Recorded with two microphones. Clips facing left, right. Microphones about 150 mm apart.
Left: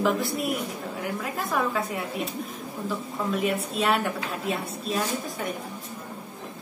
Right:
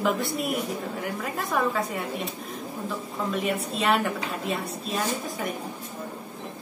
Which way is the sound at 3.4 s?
Centre (ahead or behind).